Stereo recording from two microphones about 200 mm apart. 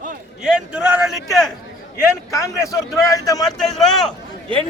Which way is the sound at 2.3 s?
15° left (ahead or behind).